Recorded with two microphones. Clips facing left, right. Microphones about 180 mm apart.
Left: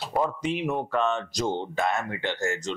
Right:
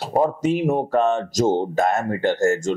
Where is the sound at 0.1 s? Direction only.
40° right (ahead or behind).